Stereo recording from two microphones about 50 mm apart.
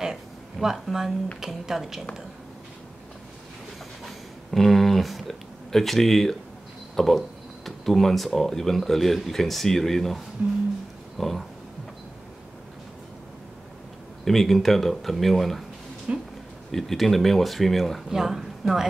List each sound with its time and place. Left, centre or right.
0.0 s speech: centre
4.0 s a sound: centre
5.7 s speech: centre
11.1 s a sound: centre
14.2 s speech: centre
16.1 s speech: right
16.7 s a woman's voice: centre